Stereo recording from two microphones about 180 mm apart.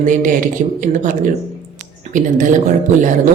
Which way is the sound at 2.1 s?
45° right (ahead or behind).